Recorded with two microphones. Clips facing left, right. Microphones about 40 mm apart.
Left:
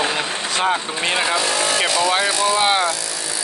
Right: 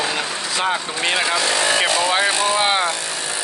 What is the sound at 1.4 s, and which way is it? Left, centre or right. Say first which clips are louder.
Speech: right 1 dB; right.